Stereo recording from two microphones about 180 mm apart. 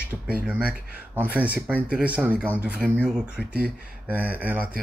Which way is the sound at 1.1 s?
10° right (ahead or behind).